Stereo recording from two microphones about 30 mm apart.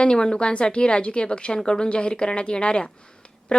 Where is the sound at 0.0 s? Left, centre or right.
Left.